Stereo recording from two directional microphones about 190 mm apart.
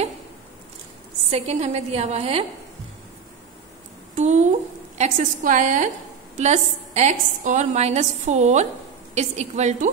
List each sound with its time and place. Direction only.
1.3 s a woman's voice: 35° right (ahead or behind)
4.1 s a woman's voice: 40° right (ahead or behind)